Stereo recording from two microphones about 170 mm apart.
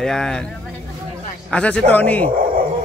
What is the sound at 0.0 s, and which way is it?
Speech, 5° left (ahead or behind).